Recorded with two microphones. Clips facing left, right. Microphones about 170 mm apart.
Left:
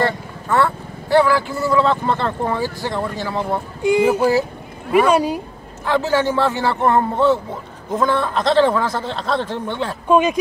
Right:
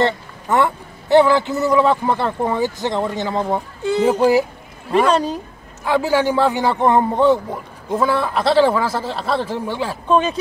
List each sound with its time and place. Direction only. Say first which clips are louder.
0.0 s speech: right 2 dB; 20° right (ahead or behind)
3.8 s speech: left 1 dB; 10° left (ahead or behind)
5.9 s speech: right 1 dB; 10° right (ahead or behind)
10.0 s speech: left 2 dB; 10° left (ahead or behind)